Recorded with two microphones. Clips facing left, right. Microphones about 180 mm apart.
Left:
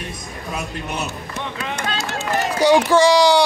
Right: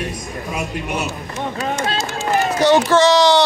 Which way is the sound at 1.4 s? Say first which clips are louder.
Right 5 dB; 40° right (ahead or behind).